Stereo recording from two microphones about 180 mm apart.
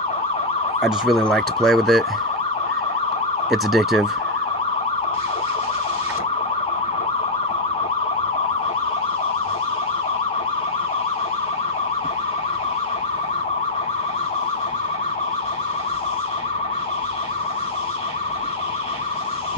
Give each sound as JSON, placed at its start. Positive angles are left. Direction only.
{"t": 0.8, "sound": "emergency vehicle", "side_deg": 0}
{"t": 3.4, "sound": "emergency vehicle", "side_deg": 0}